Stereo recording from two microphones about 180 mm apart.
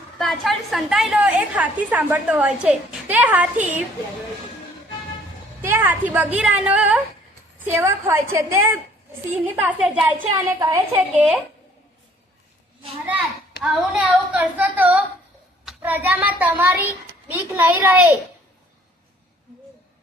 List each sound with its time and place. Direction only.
0.2 s a woman's voice: centre (ahead or behind)
5.6 s a woman's voice: 15° right (ahead or behind)
10.3 s a woman's voice: 20° right (ahead or behind)
13.1 s a child's voice: 5° right (ahead or behind)